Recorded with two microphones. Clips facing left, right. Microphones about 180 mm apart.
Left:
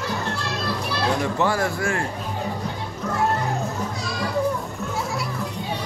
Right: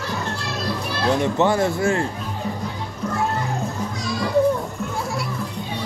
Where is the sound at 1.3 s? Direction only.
25° right (ahead or behind).